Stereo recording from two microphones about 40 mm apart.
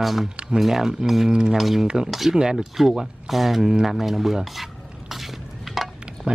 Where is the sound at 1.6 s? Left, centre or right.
Centre.